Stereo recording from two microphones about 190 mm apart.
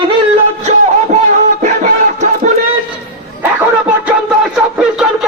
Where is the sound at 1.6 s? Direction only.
40° right (ahead or behind).